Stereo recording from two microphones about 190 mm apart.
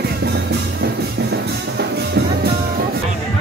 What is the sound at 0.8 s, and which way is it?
Music, 60° right (ahead or behind).